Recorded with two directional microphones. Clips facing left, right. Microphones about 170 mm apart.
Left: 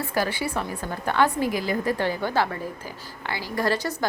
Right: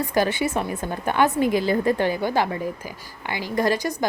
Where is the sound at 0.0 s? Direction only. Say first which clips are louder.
Right 4 dB; 20° right (ahead or behind).